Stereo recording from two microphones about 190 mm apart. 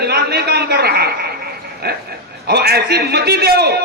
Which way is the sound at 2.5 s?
55° right (ahead or behind).